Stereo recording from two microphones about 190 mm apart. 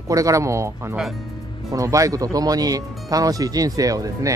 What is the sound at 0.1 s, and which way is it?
Speech, 15° right (ahead or behind).